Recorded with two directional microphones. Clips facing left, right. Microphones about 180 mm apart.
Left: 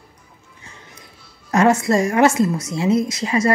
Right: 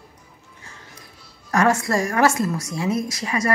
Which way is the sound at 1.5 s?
20° left (ahead or behind).